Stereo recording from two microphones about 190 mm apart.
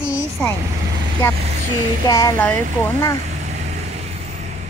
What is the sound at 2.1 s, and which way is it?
Speech, 15° left (ahead or behind).